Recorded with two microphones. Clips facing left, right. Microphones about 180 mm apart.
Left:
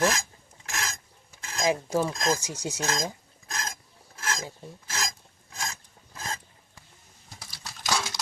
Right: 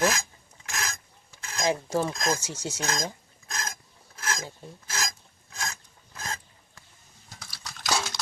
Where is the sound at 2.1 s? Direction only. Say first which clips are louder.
Left 1 dB; 30° left (ahead or behind).